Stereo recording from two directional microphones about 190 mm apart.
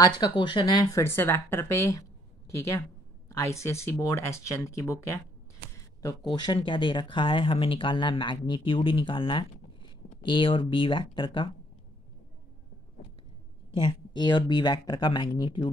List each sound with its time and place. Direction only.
0.0 s speech: 25° left (ahead or behind)
3.3 s speech: 15° left (ahead or behind)
13.7 s speech: 25° left (ahead or behind)